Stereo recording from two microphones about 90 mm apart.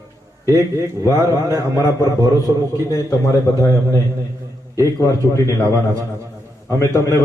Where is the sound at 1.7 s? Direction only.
40° left (ahead or behind).